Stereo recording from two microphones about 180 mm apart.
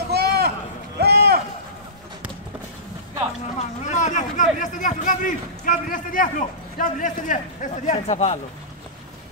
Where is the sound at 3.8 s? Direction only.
40° left (ahead or behind).